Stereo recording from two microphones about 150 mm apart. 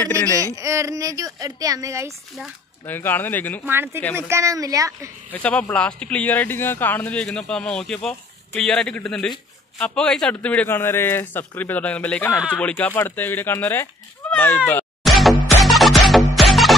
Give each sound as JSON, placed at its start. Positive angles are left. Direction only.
{"t": 0.4, "sound": "speech", "side_deg": -20}
{"t": 2.8, "sound": "speech", "side_deg": 15}
{"t": 3.6, "sound": "speech", "side_deg": -15}
{"t": 5.3, "sound": "speech", "side_deg": 10}
{"t": 14.7, "sound": "music", "side_deg": 5}